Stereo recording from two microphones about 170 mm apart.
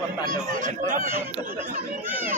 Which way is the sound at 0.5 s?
50° right (ahead or behind).